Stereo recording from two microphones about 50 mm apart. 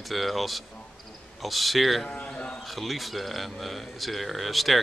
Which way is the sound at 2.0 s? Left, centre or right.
Left.